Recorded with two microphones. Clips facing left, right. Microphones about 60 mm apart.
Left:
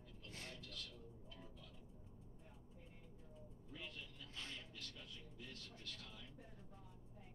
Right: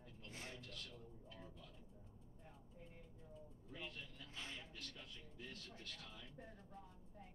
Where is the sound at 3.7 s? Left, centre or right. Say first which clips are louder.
Right 1 dB; right.